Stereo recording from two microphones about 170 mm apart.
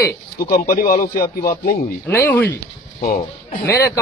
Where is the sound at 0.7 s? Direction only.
55° left (ahead or behind).